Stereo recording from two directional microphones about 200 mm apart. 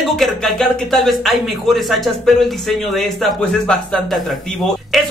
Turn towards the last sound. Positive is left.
turn(degrees=0)  # may be behind; listen again after turning